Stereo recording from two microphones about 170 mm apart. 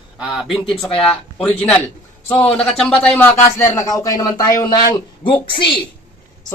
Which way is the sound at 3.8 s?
20° left (ahead or behind).